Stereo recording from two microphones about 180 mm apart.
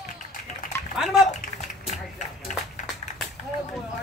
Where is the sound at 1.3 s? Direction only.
40° left (ahead or behind).